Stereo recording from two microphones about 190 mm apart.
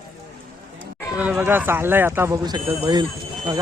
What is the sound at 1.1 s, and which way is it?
Speech, 5° right (ahead or behind).